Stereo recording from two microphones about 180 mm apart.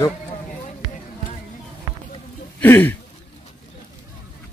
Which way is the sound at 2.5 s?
10° left (ahead or behind).